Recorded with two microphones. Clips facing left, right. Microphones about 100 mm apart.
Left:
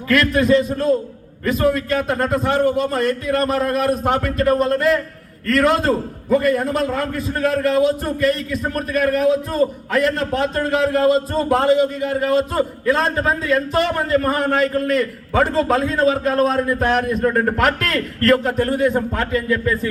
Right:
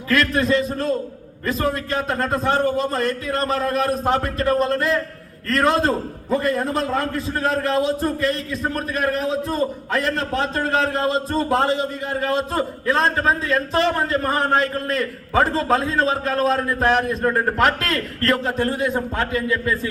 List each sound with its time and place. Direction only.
0.1 s a man's voice: 30° right (ahead or behind)
16.3 s a man's voice: 20° left (ahead or behind)
16.8 s a man's voice: 30° right (ahead or behind)